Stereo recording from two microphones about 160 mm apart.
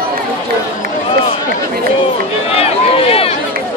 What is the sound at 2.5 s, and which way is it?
Run, 40° left (ahead or behind).